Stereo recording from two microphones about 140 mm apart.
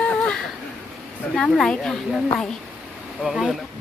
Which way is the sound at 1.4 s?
5° left (ahead or behind).